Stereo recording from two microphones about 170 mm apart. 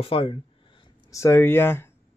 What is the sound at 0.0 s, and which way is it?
Speech, 35° left (ahead or behind).